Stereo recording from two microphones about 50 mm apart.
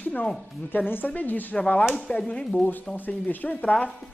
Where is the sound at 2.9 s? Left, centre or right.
Left.